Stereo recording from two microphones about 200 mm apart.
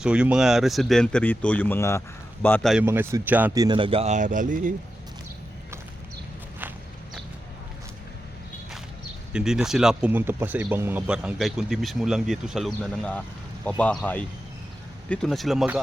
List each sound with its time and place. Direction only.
0.0 s speech: 5° right (ahead or behind)
2.8 s speech: 10° right (ahead or behind); by 4.7 s 40° right (ahead or behind)
9.3 s a man's voice: 5° right (ahead or behind)